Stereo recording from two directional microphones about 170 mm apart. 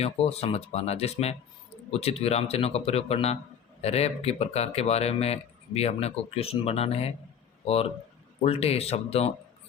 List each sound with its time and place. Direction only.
0.0 s speech: 40° left (ahead or behind)